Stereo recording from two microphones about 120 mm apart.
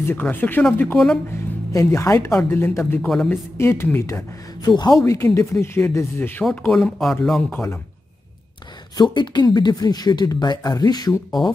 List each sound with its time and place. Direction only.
0.1 s speech: 15° left (ahead or behind)
0.9 s speech: centre (ahead or behind)
1.7 s speech: 25° left (ahead or behind)
4.6 s speech: 35° left (ahead or behind)
5.0 s speech: 25° left (ahead or behind)
6.7 s speech: centre (ahead or behind)
8.9 s speech: 40° left (ahead or behind)